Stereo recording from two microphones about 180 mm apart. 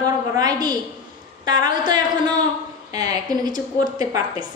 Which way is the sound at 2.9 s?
20° right (ahead or behind).